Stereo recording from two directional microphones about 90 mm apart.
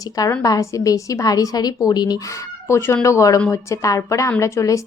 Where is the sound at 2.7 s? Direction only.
30° left (ahead or behind).